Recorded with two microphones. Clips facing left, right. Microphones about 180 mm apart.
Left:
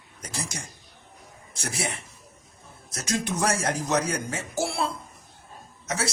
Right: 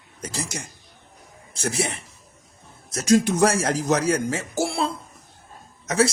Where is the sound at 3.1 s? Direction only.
85° right.